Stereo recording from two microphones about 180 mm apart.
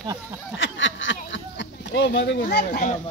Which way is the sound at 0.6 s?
90° left.